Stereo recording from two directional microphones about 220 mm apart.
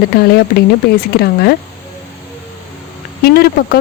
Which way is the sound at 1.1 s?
45° left (ahead or behind).